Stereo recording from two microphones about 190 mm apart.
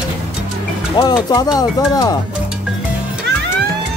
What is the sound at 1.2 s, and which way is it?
Speech, 20° left (ahead or behind).